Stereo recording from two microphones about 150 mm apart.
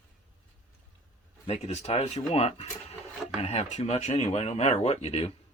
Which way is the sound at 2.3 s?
45° left (ahead or behind).